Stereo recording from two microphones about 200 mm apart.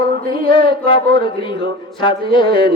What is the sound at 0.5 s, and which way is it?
Music, 25° left (ahead or behind).